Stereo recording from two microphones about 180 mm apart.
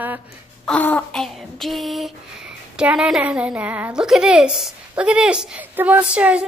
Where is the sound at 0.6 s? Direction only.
10° left (ahead or behind).